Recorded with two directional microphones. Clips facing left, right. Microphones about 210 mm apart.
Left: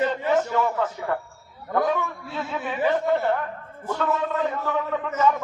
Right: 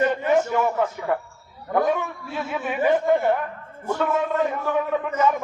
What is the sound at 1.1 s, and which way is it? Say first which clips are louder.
A man's voice: right 3 dB; 15° right (ahead or behind).